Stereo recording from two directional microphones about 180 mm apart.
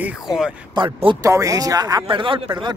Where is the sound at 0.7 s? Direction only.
25° right (ahead or behind).